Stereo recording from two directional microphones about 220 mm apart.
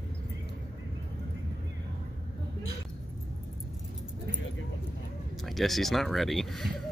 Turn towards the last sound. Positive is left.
turn(degrees=0)  # may be behind; listen again after turning